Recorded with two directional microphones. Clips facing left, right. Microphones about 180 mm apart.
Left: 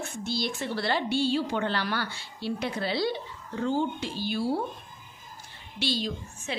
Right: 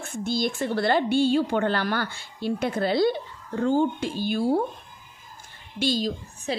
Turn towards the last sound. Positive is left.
turn(degrees=-40)  # may be behind; listen again after turning